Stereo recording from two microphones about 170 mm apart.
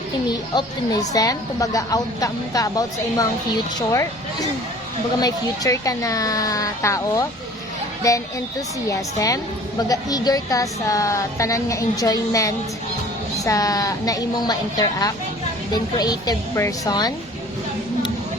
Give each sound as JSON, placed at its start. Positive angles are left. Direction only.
{"t": 0.3, "sound": "a woman's voice", "side_deg": 20}